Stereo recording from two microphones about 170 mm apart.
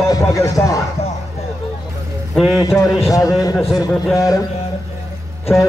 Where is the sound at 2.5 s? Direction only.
20° left (ahead or behind).